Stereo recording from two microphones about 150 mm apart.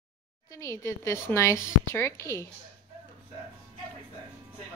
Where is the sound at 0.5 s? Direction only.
20° left (ahead or behind).